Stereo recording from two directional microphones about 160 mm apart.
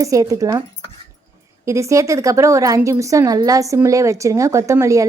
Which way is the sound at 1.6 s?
20° right (ahead or behind).